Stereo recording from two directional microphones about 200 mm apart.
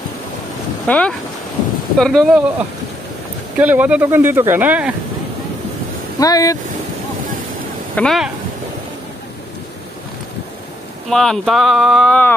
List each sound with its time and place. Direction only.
0.8 s speech: 5° left (ahead or behind)
3.5 s speech: 5° right (ahead or behind)
6.1 s speech: 15° left (ahead or behind)
7.9 s speech: 5° left (ahead or behind)
11.1 s speech: centre (ahead or behind)